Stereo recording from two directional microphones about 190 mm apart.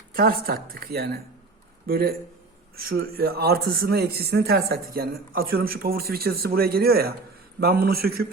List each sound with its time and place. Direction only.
0.1 s speech: 50° right (ahead or behind)